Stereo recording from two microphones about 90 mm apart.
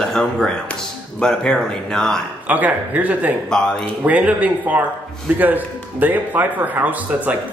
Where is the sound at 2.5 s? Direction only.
20° right (ahead or behind).